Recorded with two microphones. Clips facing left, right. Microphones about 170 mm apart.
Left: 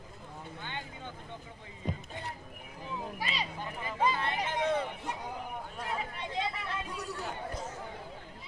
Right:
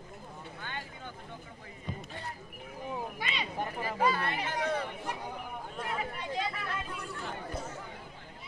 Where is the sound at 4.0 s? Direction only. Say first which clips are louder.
Even; 20° left (ahead or behind).